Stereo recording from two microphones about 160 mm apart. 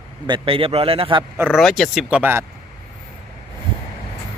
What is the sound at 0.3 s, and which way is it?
Speech, 30° right (ahead or behind).